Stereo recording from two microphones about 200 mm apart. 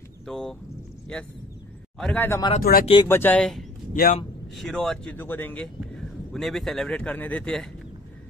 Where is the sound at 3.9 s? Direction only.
45° left (ahead or behind).